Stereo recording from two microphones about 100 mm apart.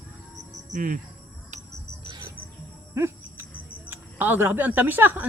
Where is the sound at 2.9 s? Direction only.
30° right (ahead or behind).